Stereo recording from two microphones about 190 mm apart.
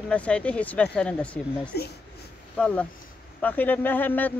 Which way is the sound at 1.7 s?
55° left (ahead or behind).